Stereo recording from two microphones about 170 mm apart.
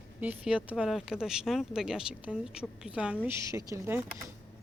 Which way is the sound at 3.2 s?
15° right (ahead or behind).